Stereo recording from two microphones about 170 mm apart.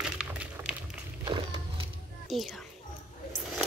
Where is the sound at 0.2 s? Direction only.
5° right (ahead or behind).